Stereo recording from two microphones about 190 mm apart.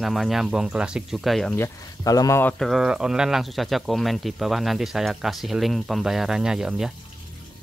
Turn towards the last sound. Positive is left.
turn(degrees=-5)  # may be behind; listen again after turning